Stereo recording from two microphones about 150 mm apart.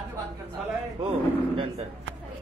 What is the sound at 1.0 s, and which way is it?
Speech, 35° right (ahead or behind).